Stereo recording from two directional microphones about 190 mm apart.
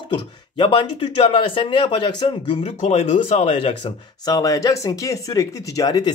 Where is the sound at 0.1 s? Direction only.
25° left (ahead or behind).